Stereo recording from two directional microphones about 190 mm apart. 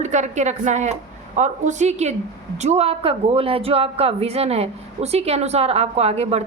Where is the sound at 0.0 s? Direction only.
40° right (ahead or behind).